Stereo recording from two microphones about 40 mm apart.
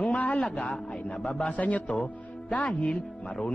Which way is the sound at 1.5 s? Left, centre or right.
Left.